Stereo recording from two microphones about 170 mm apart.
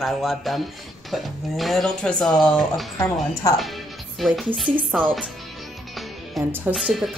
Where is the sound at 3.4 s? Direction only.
20° left (ahead or behind).